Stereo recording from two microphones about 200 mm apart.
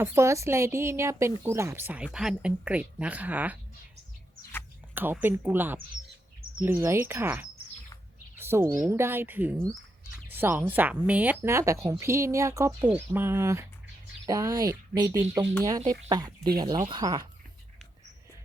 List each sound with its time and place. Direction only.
0.0 s speech: 15° right (ahead or behind)
4.9 s speech: 10° right (ahead or behind)
8.4 s a sound: 10° right (ahead or behind)
8.8 s speech: 10° right (ahead or behind)